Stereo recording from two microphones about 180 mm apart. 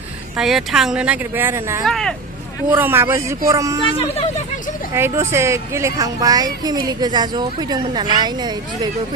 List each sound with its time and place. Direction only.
0.3 s speech: centre (ahead or behind)
1.8 s speech: centre (ahead or behind)
2.7 s speech: 10° right (ahead or behind)
3.8 s speech: 30° left (ahead or behind)
4.9 s speech: 15° right (ahead or behind)